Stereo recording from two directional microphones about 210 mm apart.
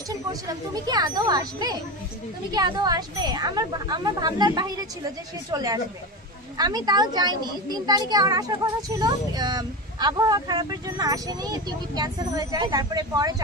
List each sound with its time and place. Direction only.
0.1 s a child's voice: 15° right (ahead or behind)